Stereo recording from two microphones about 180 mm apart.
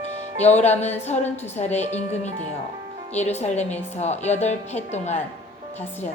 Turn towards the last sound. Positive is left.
turn(degrees=40)  # may be behind; listen again after turning